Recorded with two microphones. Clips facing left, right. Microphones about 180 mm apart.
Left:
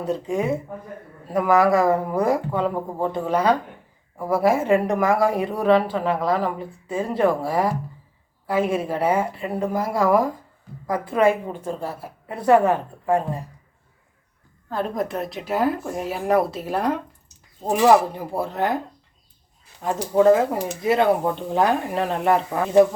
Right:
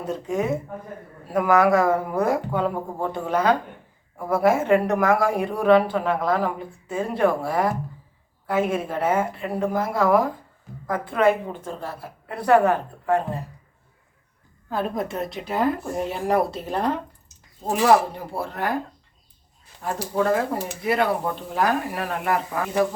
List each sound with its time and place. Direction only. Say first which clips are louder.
0.0 s a woman's voice: left 2 dB; centre (ahead or behind)
14.7 s a woman's voice: left 1 dB; 5° right (ahead or behind); by 18.8 s 20° left (ahead or behind)
19.8 s speech: left 7 dB; 20° left (ahead or behind)